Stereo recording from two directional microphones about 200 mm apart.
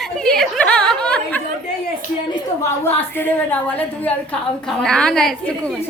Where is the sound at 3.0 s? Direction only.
10° left (ahead or behind).